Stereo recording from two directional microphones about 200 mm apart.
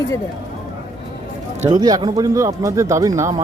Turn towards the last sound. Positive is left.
turn(degrees=-15)  # may be behind; listen again after turning